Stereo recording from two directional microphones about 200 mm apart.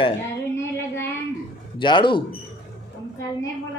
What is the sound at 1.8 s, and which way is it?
Speech, 25° left (ahead or behind).